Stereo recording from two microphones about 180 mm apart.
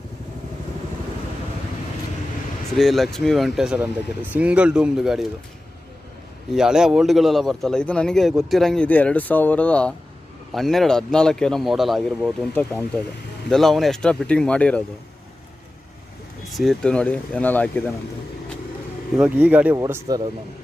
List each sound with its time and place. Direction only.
2.7 s a man's voice: centre (ahead or behind)
6.5 s a man's voice: 5° right (ahead or behind)
16.5 s speech: centre (ahead or behind)
19.1 s speech: 5° right (ahead or behind)
19.7 s speech: 20° right (ahead or behind)